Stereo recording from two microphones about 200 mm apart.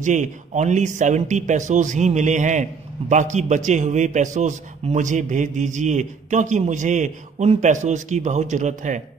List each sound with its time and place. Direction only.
0.0 s a man's voice: 35° right (ahead or behind)